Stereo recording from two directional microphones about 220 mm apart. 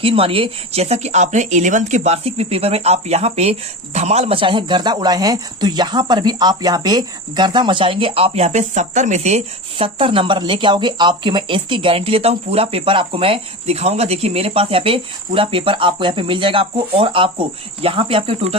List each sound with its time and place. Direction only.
0.0 s speech: 25° right (ahead or behind)